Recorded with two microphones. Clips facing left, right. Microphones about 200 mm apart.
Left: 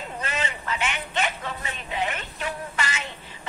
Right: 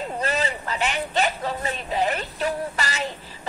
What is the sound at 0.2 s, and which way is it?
A woman's voice, 35° right (ahead or behind).